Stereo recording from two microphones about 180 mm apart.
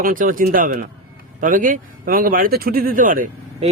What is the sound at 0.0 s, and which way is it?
Speech, 50° right (ahead or behind).